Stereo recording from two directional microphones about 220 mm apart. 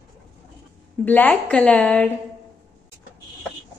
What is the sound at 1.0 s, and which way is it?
A woman's voice, 5° left (ahead or behind).